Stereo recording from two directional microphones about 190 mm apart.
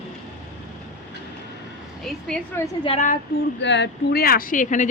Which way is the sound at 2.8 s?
30° left (ahead or behind).